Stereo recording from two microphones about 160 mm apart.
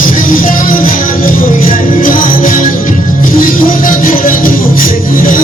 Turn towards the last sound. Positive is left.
turn(degrees=60)  # may be behind; listen again after turning